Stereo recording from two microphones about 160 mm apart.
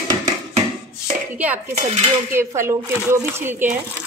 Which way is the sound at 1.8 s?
40° right (ahead or behind).